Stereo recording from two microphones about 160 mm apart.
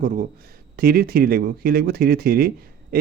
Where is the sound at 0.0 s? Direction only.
60° right (ahead or behind).